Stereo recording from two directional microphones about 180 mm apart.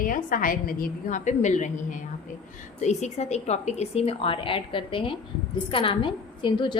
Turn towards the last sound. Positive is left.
turn(degrees=25)  # may be behind; listen again after turning